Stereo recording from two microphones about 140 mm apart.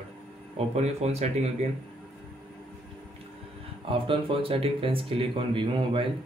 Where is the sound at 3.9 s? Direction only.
40° right (ahead or behind).